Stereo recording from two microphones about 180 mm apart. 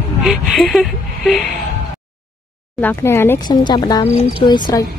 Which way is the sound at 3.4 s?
25° left (ahead or behind).